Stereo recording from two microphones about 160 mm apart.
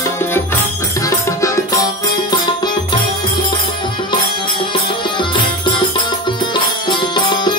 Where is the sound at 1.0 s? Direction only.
20° left (ahead or behind).